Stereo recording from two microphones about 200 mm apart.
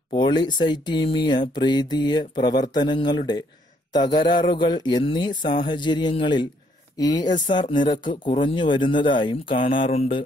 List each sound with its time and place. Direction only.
0.1 s speech: 20° left (ahead or behind)